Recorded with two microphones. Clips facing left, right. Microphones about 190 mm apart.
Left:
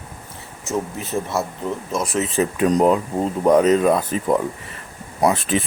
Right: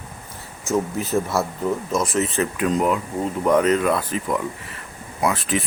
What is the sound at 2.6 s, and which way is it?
Speech, 35° left (ahead or behind).